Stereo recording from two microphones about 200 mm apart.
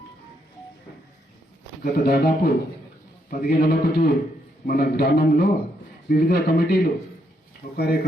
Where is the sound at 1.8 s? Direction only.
50° left (ahead or behind).